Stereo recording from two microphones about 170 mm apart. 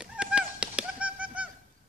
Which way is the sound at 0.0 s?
5° right (ahead or behind).